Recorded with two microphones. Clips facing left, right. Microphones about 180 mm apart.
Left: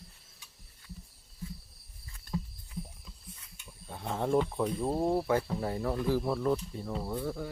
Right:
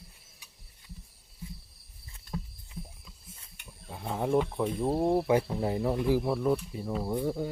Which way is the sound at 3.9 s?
5° right (ahead or behind).